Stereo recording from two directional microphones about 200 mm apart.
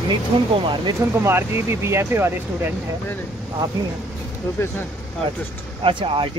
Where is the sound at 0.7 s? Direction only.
15° right (ahead or behind).